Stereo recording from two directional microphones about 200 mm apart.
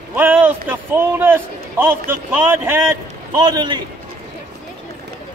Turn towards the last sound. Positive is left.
turn(degrees=-20)  # may be behind; listen again after turning